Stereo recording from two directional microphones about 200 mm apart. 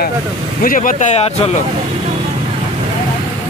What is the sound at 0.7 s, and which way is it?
Speech, 40° left (ahead or behind).